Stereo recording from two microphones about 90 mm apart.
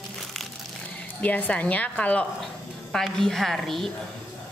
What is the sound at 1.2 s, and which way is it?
A woman's voice, 15° left (ahead or behind).